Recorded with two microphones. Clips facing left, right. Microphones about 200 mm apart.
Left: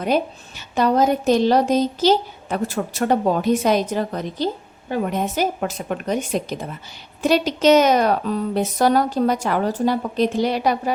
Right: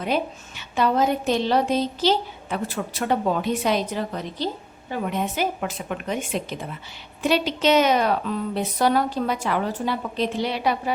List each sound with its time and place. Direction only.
0.0 s a woman's voice: 40° left (ahead or behind)